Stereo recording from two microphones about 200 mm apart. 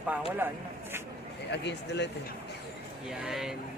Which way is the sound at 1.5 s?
60° left (ahead or behind).